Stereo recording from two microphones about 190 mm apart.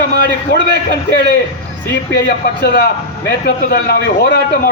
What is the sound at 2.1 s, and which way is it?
A man's voice, 60° left (ahead or behind).